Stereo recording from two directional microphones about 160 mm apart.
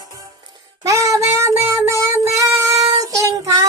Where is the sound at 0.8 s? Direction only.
20° right (ahead or behind).